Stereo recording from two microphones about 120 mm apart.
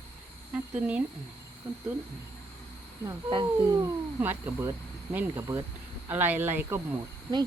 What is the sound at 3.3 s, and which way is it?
Speech, 35° right (ahead or behind).